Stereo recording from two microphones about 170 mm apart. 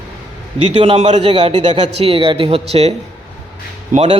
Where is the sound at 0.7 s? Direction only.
35° right (ahead or behind).